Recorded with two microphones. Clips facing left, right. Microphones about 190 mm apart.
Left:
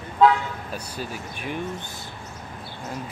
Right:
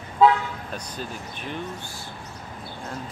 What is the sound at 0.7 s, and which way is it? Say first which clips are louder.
Speech: left 1 dB; 10° left (ahead or behind).